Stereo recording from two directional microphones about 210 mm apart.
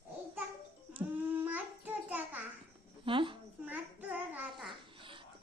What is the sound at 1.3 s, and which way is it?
Babbling, 10° right (ahead or behind).